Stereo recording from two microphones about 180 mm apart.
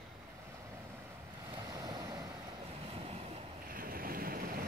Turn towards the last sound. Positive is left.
turn(degrees=-55)  # may be behind; listen again after turning